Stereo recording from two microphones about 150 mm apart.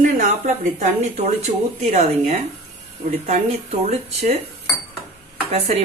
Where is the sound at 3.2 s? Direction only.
50° right (ahead or behind).